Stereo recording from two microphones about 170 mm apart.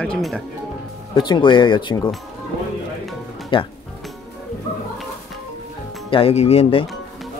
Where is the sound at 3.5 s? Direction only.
30° left (ahead or behind).